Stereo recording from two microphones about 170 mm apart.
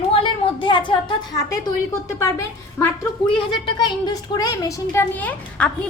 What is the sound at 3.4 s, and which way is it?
A woman's voice, 25° left (ahead or behind).